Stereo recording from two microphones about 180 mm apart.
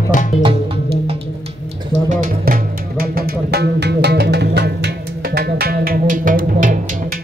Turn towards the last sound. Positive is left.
turn(degrees=-50)  # may be behind; listen again after turning